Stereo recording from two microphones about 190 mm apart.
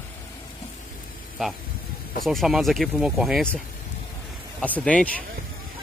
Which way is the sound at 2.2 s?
Centre (ahead or behind).